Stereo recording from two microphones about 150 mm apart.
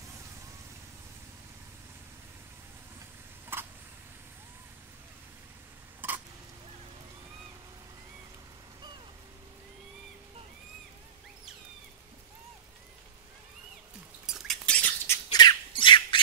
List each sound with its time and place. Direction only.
3.5 s a sound: 15° right (ahead or behind)
5.9 s stir: 10° right (ahead or behind)
14.2 s squawk: 5° left (ahead or behind)
15.3 s squawk: 30° left (ahead or behind)